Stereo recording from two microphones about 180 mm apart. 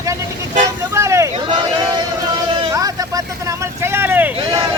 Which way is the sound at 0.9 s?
15° right (ahead or behind).